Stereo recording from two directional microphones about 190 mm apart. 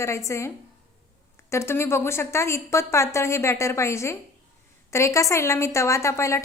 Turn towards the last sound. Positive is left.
turn(degrees=15)  # may be behind; listen again after turning